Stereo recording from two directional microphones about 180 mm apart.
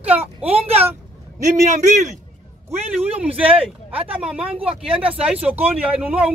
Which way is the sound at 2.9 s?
5° right (ahead or behind).